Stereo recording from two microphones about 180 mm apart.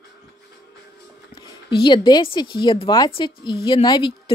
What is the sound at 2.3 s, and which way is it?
Speech, 25° left (ahead or behind).